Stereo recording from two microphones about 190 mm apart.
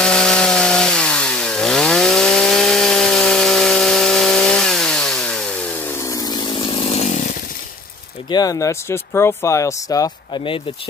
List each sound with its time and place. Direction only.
0.0 s chainsaw: 5° left (ahead or behind); by 7.3 s 40° left (ahead or behind)
8.3 s speech: 20° left (ahead or behind)